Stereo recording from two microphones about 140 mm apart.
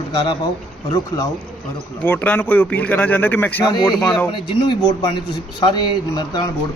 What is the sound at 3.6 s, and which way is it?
Speech, 30° left (ahead or behind).